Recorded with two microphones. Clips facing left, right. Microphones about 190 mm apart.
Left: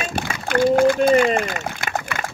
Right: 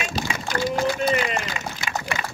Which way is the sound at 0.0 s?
55° left (ahead or behind).